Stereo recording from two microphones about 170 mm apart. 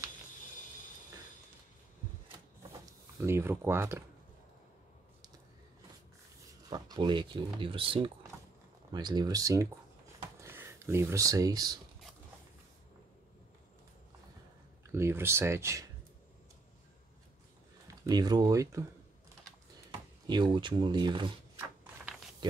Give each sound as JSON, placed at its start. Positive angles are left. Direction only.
{"t": 3.2, "sound": "speech", "side_deg": -15}
{"t": 6.7, "sound": "speech", "side_deg": -25}
{"t": 15.0, "sound": "speech", "side_deg": -15}
{"t": 17.8, "sound": "speech", "side_deg": -20}
{"t": 19.9, "sound": "speech", "side_deg": -25}